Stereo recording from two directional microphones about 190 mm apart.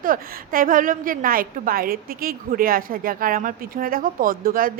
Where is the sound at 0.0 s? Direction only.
45° right (ahead or behind).